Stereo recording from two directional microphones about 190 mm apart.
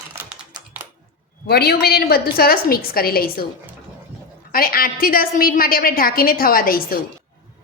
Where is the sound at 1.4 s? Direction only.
55° left (ahead or behind).